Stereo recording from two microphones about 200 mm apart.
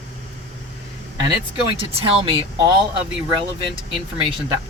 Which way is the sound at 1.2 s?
25° right (ahead or behind).